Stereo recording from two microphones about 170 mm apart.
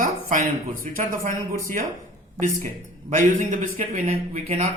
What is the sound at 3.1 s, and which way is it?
A woman's voice, 50° right (ahead or behind).